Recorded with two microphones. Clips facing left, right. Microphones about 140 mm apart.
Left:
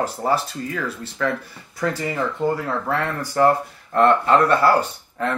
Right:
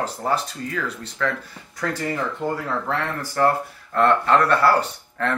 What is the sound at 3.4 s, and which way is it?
Speech, 15° left (ahead or behind).